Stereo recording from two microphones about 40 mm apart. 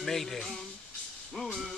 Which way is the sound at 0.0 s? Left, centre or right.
Centre.